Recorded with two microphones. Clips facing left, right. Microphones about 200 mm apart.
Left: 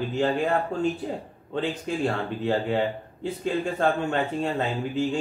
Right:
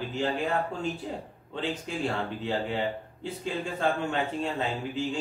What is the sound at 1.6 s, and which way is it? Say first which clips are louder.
Speech: left 5 dB; 55° left (ahead or behind).